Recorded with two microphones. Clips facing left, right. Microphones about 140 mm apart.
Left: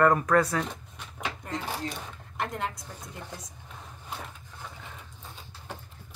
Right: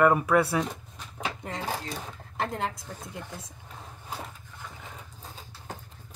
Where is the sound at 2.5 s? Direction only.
30° right (ahead or behind).